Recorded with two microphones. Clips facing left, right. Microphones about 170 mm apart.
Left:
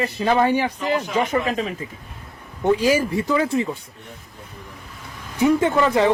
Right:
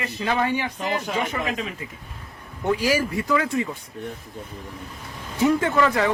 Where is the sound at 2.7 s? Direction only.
25° left (ahead or behind).